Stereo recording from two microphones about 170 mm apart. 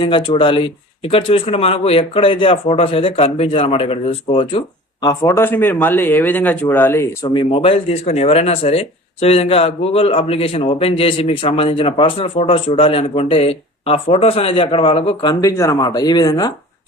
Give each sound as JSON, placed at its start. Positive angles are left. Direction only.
{"t": 0.0, "sound": "speech", "side_deg": 30}
{"t": 5.0, "sound": "speech", "side_deg": 20}
{"t": 7.3, "sound": "speech", "side_deg": 35}